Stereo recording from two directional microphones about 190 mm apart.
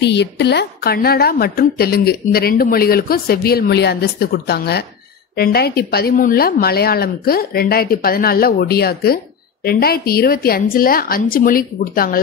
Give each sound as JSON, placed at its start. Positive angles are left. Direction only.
{"t": 0.0, "sound": "a woman's voice", "side_deg": 65}